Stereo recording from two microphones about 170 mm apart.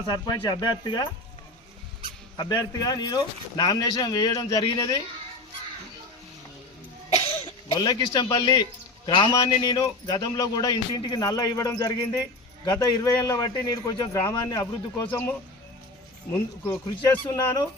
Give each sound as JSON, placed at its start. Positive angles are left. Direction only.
{"t": 0.1, "sound": "a man's voice", "side_deg": 25}
{"t": 2.3, "sound": "a man's voice", "side_deg": 25}
{"t": 7.1, "sound": "cough", "side_deg": 35}
{"t": 7.7, "sound": "a man's voice", "side_deg": 25}